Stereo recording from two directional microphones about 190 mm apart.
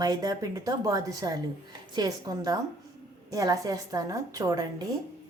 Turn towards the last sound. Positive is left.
turn(degrees=-20)  # may be behind; listen again after turning